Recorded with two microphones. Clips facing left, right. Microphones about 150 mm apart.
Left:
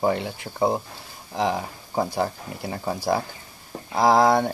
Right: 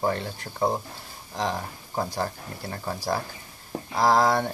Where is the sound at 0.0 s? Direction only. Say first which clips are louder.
Left 4 dB; 15° left (ahead or behind).